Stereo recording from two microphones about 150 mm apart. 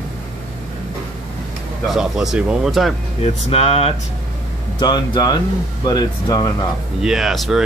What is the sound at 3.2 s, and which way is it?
Speech, 40° left (ahead or behind).